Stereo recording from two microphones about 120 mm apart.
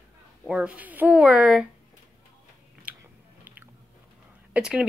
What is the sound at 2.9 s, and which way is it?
Biting, 15° right (ahead or behind).